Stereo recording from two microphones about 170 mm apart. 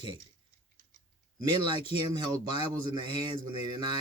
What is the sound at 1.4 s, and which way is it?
A man's voice, 25° right (ahead or behind).